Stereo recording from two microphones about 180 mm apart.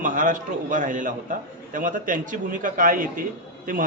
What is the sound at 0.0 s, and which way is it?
A man's voice, 45° right (ahead or behind).